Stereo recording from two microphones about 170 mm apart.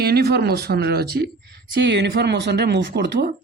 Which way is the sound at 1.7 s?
90° right.